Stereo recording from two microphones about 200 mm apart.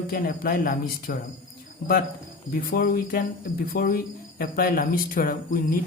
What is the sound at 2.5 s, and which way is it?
Speech, 50° left (ahead or behind).